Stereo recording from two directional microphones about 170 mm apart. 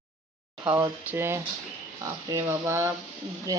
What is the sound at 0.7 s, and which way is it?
Speech, 15° right (ahead or behind).